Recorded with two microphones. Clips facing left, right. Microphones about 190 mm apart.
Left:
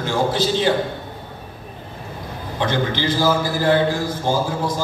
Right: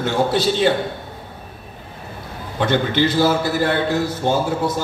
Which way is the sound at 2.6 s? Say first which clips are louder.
Right 3 dB; 65° right (ahead or behind).